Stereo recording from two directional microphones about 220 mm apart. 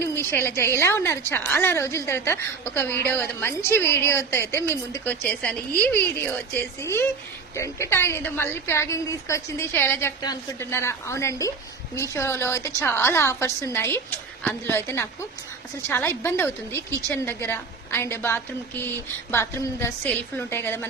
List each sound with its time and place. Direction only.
0.0 s a woman's voice: 10° left (ahead or behind)